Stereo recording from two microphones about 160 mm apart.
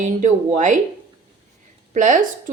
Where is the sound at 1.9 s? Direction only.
50° right (ahead or behind).